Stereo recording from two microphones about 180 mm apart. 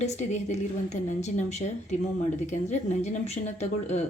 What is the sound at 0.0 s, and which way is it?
Speech, 40° left (ahead or behind).